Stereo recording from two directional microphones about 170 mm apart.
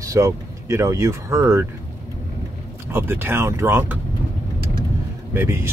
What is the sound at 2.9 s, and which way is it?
Speech, 15° right (ahead or behind).